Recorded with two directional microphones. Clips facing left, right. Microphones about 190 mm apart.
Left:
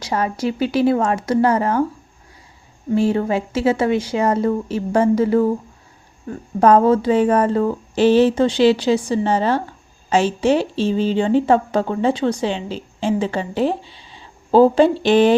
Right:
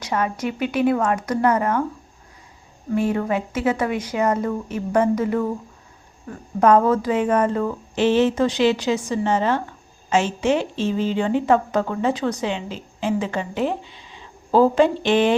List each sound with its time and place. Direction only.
0.0 s a woman's voice: 30° left (ahead or behind)
2.9 s a woman's voice: 30° left (ahead or behind)
6.6 s a woman's voice: 30° left (ahead or behind)